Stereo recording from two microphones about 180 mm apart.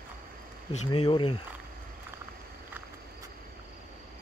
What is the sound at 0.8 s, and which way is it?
Speech, 25° left (ahead or behind).